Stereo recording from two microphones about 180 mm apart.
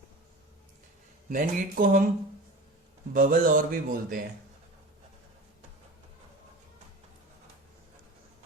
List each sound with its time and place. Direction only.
1.3 s speech: 50° right (ahead or behind)
3.1 s speech: 50° right (ahead or behind)